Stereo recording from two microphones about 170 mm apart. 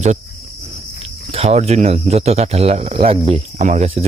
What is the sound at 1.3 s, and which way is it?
Speech, 40° right (ahead or behind).